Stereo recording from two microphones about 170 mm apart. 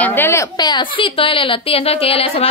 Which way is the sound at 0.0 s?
10° left (ahead or behind).